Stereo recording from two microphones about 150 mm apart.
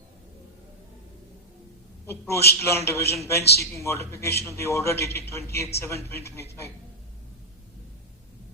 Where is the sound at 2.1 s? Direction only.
20° left (ahead or behind).